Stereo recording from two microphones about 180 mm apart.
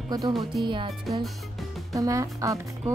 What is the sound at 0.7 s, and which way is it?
Speech, 25° right (ahead or behind).